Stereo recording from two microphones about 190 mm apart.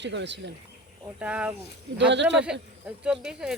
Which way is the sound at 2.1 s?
70° right (ahead or behind).